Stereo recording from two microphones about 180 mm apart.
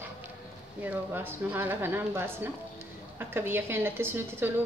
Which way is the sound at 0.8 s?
10° right (ahead or behind).